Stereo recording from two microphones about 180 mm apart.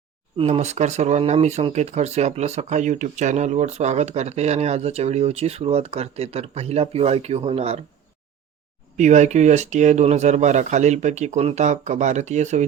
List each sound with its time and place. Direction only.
0.3 s speech: 35° right (ahead or behind)
9.0 s speech: 40° right (ahead or behind)